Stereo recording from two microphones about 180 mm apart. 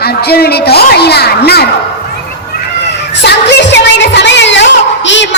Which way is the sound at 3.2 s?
70° left (ahead or behind).